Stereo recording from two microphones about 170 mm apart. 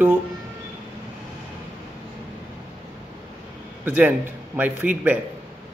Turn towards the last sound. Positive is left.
turn(degrees=-10)  # may be behind; listen again after turning